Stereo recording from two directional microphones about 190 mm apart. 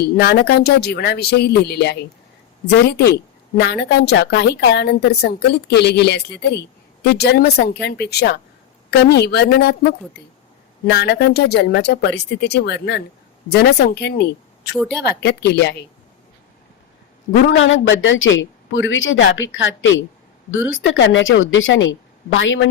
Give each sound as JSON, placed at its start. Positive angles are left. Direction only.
{"t": 0.0, "sound": "a woman's voice", "side_deg": 60}
{"t": 3.6, "sound": "a woman's voice", "side_deg": 60}
{"t": 17.6, "sound": "a woman's voice", "side_deg": 90}